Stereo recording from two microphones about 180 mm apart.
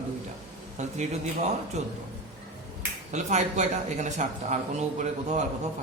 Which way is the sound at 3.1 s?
40° right (ahead or behind).